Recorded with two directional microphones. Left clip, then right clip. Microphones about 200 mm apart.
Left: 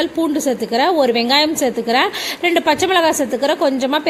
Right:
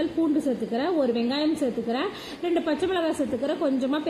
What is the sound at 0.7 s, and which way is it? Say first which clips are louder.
Speech: left 12 dB; 20° left (ahead or behind).